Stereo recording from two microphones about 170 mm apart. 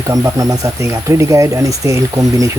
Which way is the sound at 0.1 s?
20° right (ahead or behind).